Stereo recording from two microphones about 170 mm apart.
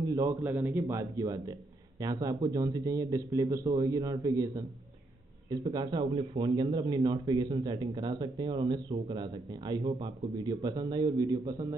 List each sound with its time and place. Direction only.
0.1 s speech: 15° right (ahead or behind)